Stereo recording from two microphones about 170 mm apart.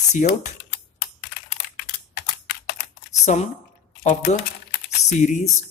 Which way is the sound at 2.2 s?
70° left (ahead or behind).